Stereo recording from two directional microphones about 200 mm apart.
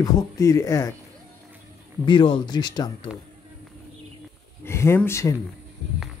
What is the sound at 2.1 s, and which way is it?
Speech, 25° left (ahead or behind).